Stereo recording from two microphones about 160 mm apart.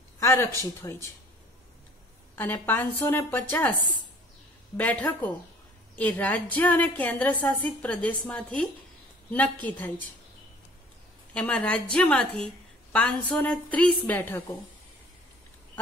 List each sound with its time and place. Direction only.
0.2 s speech: 15° left (ahead or behind)
2.3 s a woman's voice: 10° left (ahead or behind)
4.7 s a woman's voice: 10° left (ahead or behind)
11.3 s a woman's voice: 5° left (ahead or behind)